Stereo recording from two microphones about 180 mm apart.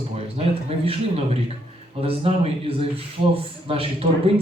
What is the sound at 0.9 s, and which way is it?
A man's voice, 35° right (ahead or behind).